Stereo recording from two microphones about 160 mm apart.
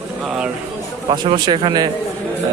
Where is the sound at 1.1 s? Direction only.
25° right (ahead or behind).